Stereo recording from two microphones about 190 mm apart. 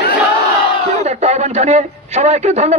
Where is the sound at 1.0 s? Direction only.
35° right (ahead or behind).